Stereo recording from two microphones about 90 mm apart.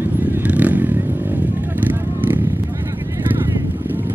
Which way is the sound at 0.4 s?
15° right (ahead or behind).